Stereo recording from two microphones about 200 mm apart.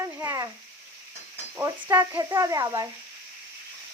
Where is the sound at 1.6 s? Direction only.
15° right (ahead or behind).